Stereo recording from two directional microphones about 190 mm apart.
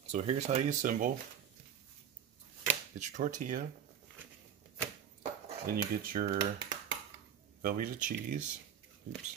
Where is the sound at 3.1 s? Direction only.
45° right (ahead or behind).